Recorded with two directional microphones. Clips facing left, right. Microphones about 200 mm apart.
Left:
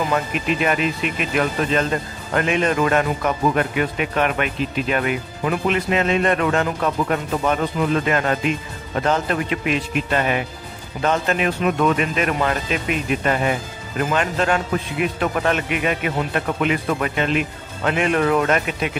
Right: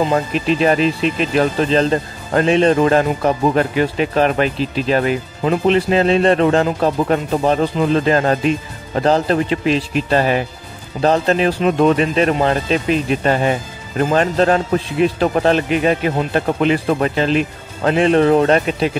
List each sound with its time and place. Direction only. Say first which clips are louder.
0.0 s speech: right 5 dB; 30° right (ahead or behind)